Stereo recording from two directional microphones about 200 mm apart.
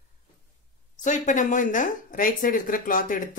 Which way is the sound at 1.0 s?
40° left (ahead or behind).